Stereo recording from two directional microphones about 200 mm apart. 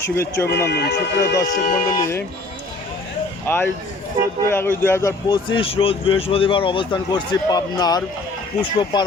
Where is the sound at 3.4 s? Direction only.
10° left (ahead or behind).